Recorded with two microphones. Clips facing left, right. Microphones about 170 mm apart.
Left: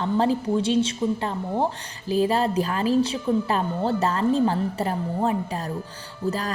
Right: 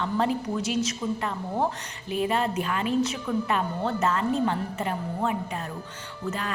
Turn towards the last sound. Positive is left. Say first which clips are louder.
# left 4 dB
turn(degrees=35)  # may be behind; listen again after turning